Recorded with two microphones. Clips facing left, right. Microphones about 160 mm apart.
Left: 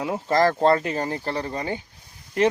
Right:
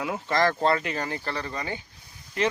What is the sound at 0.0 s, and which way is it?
Speech, 35° left (ahead or behind).